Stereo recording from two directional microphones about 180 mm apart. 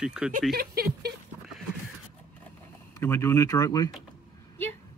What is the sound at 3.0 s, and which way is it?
Speech, 15° left (ahead or behind).